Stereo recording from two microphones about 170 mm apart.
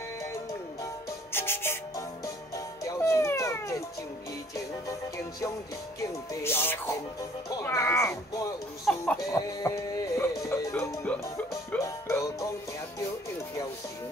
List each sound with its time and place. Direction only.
1.3 s music: 15° left (ahead or behind)
6.0 s speech: 15° left (ahead or behind)
8.9 s speech: 5° left (ahead or behind)
9.2 s music: 20° left (ahead or behind)